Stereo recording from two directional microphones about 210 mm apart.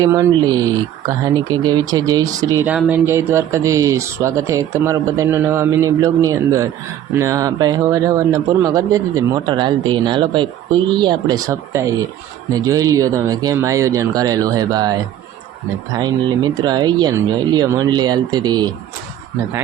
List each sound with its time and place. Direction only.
0.0 s speech: 15° right (ahead or behind)